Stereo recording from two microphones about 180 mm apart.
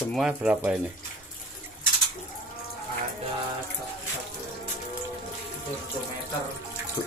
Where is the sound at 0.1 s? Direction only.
5° right (ahead or behind).